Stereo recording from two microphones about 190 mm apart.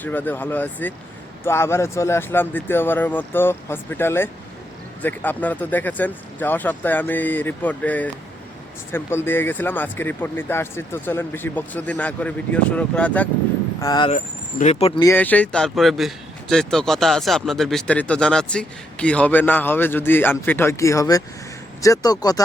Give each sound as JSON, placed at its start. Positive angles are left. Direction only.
{"t": 0.0, "sound": "a man's voice", "side_deg": 10}
{"t": 13.8, "sound": "speech", "side_deg": 20}
{"t": 14.6, "sound": "speech", "side_deg": 35}
{"t": 15.0, "sound": "a man's voice", "side_deg": 10}